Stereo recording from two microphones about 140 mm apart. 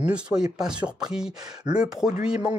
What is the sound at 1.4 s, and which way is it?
Speech, 30° right (ahead or behind).